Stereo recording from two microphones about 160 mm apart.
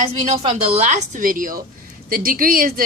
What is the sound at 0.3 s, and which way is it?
A woman's voice, 40° right (ahead or behind).